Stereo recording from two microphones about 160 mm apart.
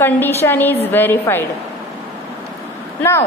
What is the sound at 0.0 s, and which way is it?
A woman's voice, 15° left (ahead or behind).